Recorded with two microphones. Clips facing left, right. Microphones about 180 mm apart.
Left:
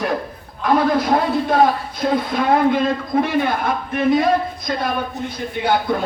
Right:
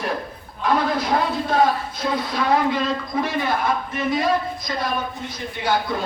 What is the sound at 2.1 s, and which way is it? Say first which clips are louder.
A man's voice: left 3 dB; 50° left (ahead or behind).